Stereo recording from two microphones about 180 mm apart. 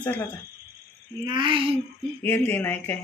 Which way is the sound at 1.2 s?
25° right (ahead or behind).